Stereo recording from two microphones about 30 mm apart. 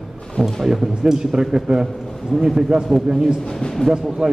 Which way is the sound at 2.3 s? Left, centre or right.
Centre.